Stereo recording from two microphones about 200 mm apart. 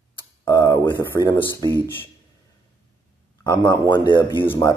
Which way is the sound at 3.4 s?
20° left (ahead or behind).